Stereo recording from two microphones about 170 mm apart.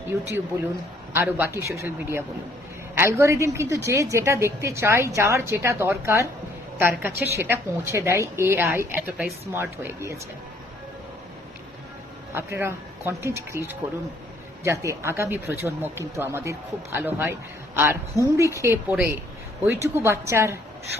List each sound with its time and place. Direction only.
1.1 s a woman's voice: 15° right (ahead or behind)
12.3 s a woman's voice: 15° right (ahead or behind)